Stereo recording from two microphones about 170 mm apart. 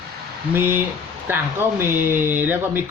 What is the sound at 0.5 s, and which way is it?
Speech, 15° right (ahead or behind).